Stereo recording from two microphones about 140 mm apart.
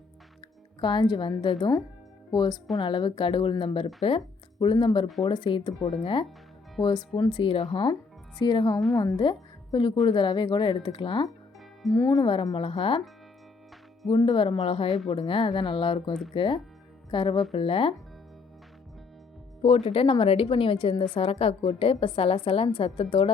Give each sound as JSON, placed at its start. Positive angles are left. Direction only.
{"t": 0.8, "sound": "a woman's voice", "side_deg": 35}
{"t": 8.4, "sound": "a woman's voice", "side_deg": 30}
{"t": 11.9, "sound": "a woman's voice", "side_deg": 25}
{"t": 14.1, "sound": "a woman's voice", "side_deg": 30}
{"t": 19.6, "sound": "a woman's voice", "side_deg": 45}